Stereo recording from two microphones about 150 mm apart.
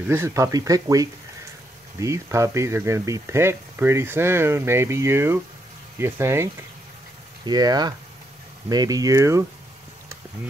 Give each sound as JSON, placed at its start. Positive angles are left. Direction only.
{"t": 0.0, "sound": "speech", "side_deg": -15}